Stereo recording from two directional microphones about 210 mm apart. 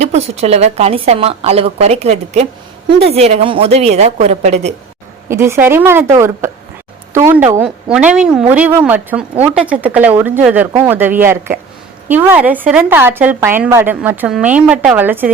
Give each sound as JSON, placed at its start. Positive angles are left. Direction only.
{"t": 0.0, "sound": "a woman's voice", "side_deg": -30}
{"t": 5.3, "sound": "a woman's voice", "side_deg": -10}